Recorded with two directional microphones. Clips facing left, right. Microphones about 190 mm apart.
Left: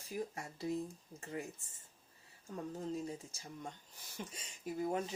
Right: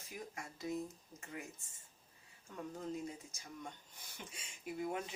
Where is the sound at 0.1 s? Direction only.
35° left (ahead or behind).